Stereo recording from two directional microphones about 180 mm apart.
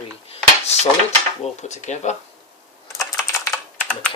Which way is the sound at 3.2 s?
15° left (ahead or behind).